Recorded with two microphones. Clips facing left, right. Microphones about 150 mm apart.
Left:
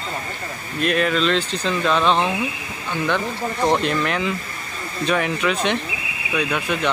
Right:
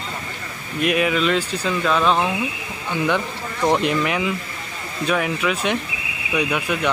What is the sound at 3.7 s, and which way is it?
Speech, 15° right (ahead or behind).